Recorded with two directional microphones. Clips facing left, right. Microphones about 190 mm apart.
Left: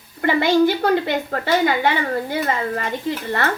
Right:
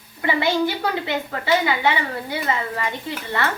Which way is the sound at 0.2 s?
50° left (ahead or behind).